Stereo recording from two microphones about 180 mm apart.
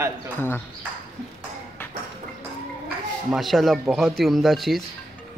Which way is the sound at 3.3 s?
Centre (ahead or behind).